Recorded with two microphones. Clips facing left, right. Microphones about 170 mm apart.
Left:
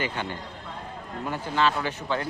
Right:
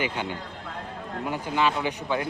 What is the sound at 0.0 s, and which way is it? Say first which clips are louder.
Speech: right 1 dB; 15° right (ahead or behind).